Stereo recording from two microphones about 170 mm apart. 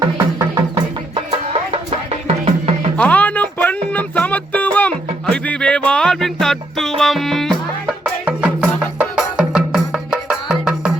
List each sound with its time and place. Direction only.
0.0 s music: 20° right (ahead or behind)
2.2 s music: 35° right (ahead or behind)
3.0 s music: 10° left (ahead or behind)